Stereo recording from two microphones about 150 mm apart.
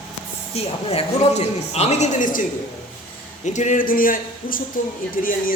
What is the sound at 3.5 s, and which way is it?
A man's voice, 55° left (ahead or behind).